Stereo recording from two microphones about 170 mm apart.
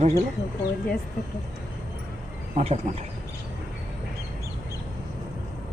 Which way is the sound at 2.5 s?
35° right (ahead or behind).